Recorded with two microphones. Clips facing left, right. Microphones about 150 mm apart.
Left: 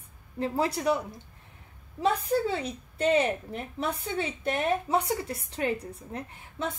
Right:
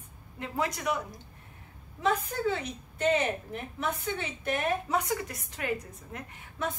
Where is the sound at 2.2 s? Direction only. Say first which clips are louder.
Left 4 dB; 35° left (ahead or behind).